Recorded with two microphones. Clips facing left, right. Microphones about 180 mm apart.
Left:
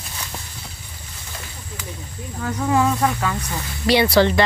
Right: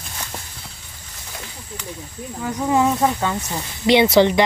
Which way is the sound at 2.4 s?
15° right (ahead or behind).